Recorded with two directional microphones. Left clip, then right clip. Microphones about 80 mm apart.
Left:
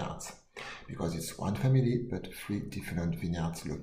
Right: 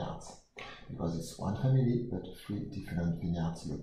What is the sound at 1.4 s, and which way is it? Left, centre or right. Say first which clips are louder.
Speech: left 2 dB; left.